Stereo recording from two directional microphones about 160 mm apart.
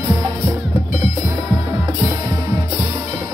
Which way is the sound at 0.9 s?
50° left (ahead or behind).